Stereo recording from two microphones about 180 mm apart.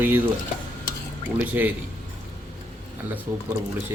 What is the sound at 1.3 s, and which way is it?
Speech, 10° right (ahead or behind).